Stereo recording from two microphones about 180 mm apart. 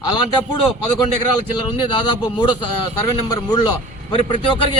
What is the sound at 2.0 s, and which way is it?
Speech, 25° left (ahead or behind).